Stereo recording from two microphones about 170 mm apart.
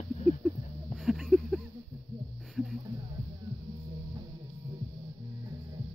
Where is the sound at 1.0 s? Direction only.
Centre (ahead or behind).